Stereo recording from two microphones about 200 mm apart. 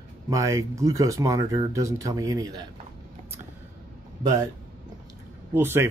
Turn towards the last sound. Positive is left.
turn(degrees=-10)  # may be behind; listen again after turning